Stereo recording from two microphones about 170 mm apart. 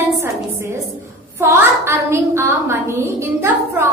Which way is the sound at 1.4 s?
15° right (ahead or behind).